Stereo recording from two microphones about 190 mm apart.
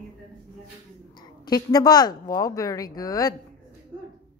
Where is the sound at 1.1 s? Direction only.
20° left (ahead or behind).